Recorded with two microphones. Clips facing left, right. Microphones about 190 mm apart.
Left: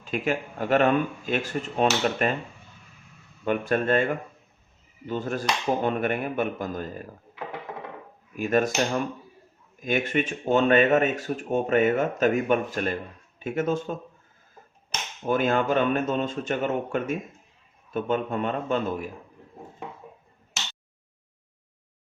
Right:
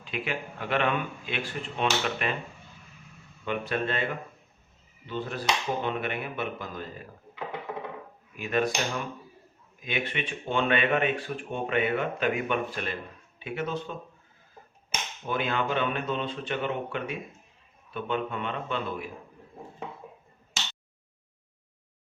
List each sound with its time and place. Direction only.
0.0 s speech: 45° left (ahead or behind)
3.4 s speech: 45° left (ahead or behind)
8.4 s speech: 45° left (ahead or behind)
9.8 s speech: 45° left (ahead or behind)
14.9 s a sound: 10° right (ahead or behind)
15.3 s speech: 45° left (ahead or behind)